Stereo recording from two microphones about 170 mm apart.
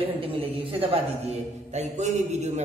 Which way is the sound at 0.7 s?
35° right (ahead or behind).